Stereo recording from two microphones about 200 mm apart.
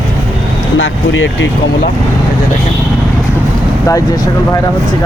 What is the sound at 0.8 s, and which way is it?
Speech, 70° left (ahead or behind).